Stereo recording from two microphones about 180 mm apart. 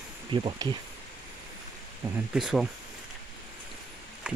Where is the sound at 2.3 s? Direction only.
Centre (ahead or behind).